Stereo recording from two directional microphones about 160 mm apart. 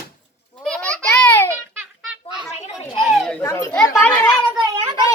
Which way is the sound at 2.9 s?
Centre (ahead or behind).